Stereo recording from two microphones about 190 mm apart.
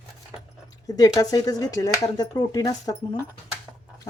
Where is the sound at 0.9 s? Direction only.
20° left (ahead or behind).